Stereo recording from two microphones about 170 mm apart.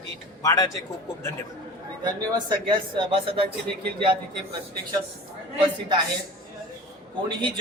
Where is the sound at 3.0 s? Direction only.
30° right (ahead or behind).